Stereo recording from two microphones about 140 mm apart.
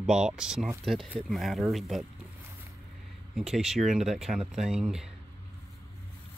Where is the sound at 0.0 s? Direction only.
5° right (ahead or behind).